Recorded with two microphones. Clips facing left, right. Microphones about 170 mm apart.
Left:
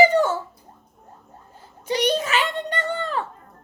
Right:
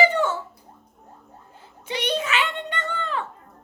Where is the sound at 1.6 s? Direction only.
40° left (ahead or behind).